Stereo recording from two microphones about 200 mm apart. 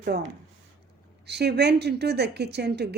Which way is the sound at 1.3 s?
55° right (ahead or behind).